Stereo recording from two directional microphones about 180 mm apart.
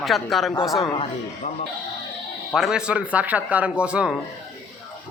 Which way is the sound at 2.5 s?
5° right (ahead or behind).